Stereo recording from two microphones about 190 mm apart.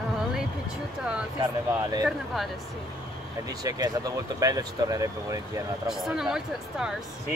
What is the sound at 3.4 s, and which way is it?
Speech, 20° right (ahead or behind).